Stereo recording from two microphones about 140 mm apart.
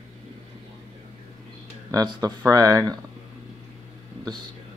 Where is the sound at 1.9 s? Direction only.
30° right (ahead or behind).